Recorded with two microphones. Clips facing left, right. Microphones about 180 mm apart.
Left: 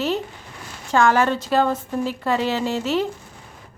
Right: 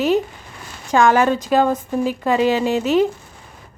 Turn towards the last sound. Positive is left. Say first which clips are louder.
# right 6 dB
turn(degrees=-15)  # may be behind; listen again after turning